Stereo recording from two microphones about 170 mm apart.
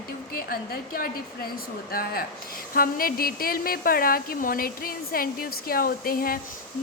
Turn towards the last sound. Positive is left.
turn(degrees=60)  # may be behind; listen again after turning